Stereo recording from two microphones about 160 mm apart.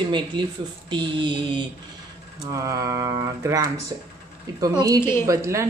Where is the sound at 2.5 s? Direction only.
20° right (ahead or behind).